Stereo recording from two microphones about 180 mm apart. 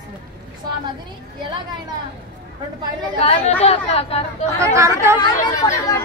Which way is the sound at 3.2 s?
30° left (ahead or behind).